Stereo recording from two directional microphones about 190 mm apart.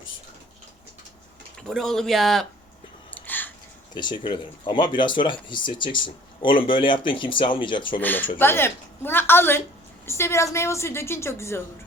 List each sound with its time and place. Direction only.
1.5 s speech: 5° left (ahead or behind)
3.1 s a sound: 10° left (ahead or behind)
3.9 s speech: 25° left (ahead or behind)
8.0 s a woman's voice: 10° left (ahead or behind)